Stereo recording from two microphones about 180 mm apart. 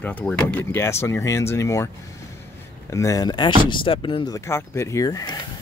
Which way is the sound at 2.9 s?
15° left (ahead or behind).